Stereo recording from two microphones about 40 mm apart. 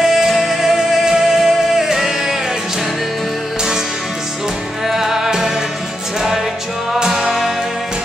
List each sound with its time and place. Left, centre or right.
0.0 s music: centre
4.8 s music: centre
7.0 s music: centre